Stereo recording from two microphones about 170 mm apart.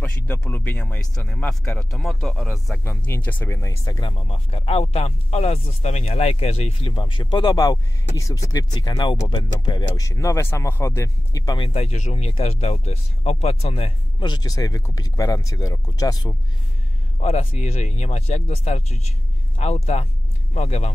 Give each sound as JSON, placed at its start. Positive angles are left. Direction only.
{"t": 0.0, "sound": "speech", "side_deg": 10}
{"t": 4.3, "sound": "speech", "side_deg": 35}
{"t": 17.2, "sound": "speech", "side_deg": 40}